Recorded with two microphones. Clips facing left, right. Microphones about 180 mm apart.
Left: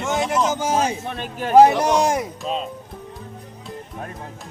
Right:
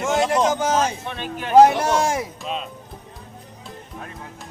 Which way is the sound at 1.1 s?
40° left (ahead or behind).